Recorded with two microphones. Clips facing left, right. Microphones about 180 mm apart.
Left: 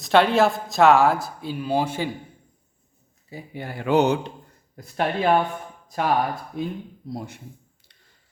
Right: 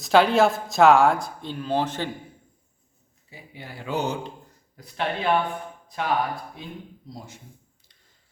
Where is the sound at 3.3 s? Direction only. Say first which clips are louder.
Left 8 dB; 45° left (ahead or behind); by 4.3 s 70° left (ahead or behind).